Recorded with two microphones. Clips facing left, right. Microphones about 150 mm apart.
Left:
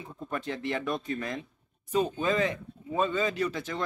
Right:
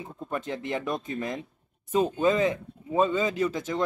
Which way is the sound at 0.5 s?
20° right (ahead or behind).